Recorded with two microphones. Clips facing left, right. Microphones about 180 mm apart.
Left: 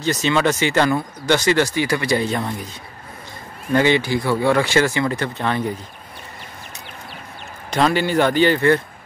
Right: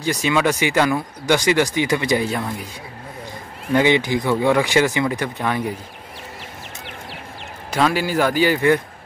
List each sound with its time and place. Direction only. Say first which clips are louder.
0.0 s speech: left 1 dB; 10° right (ahead or behind)
2.2 s speech: left 1 dB; 5° right (ahead or behind)
3.7 s speech: even; 15° right (ahead or behind)
7.7 s speech: left 2 dB; 5° right (ahead or behind)